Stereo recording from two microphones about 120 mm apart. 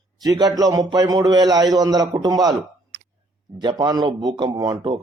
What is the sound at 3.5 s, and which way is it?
A man's voice, 40° right (ahead or behind).